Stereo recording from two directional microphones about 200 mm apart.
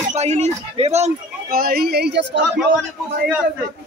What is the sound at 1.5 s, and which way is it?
Speech, 50° right (ahead or behind).